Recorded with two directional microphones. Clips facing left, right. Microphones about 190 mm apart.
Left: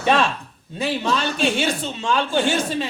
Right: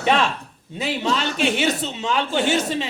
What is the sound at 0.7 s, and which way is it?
A man's voice, 20° right (ahead or behind).